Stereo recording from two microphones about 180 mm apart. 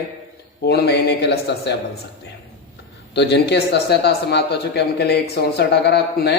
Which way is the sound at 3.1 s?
70° left (ahead or behind).